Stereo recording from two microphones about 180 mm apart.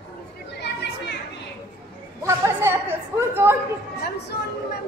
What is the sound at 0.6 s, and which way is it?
Children playing, 70° left (ahead or behind).